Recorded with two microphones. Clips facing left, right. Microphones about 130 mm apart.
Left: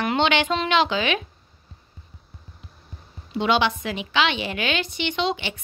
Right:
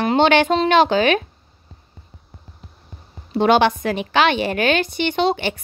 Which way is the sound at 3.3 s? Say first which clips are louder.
Right 6 dB; 50° right (ahead or behind).